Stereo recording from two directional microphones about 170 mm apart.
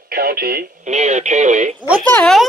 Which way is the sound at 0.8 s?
40° right (ahead or behind).